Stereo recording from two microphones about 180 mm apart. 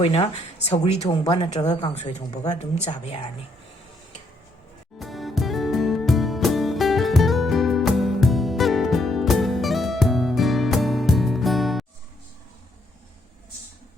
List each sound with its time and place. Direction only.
0.0 s speech: 30° left (ahead or behind)
4.9 s music: centre (ahead or behind)